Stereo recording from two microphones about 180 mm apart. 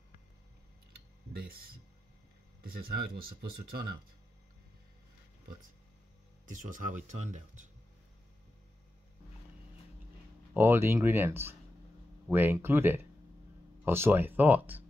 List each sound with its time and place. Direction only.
1.3 s speech: 55° right (ahead or behind)
6.4 s speech: 45° right (ahead or behind)
10.5 s speech: 15° right (ahead or behind)